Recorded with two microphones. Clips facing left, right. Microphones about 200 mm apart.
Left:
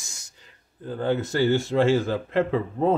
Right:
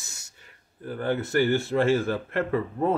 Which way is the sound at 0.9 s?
20° left (ahead or behind).